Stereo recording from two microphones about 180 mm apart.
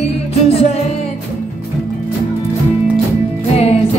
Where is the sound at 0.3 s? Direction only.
35° left (ahead or behind).